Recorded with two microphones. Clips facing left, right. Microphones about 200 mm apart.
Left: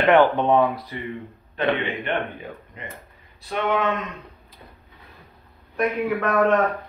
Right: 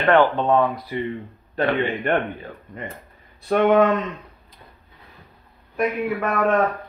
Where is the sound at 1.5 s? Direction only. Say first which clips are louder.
Right 2 dB; 40° right (ahead or behind).